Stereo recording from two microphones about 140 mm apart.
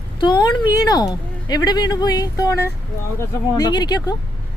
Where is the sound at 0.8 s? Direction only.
30° left (ahead or behind).